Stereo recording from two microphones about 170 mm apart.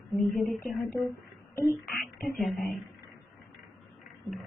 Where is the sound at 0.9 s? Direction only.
15° left (ahead or behind).